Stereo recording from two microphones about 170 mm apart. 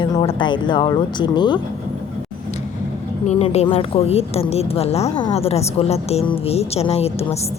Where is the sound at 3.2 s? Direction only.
40° left (ahead or behind).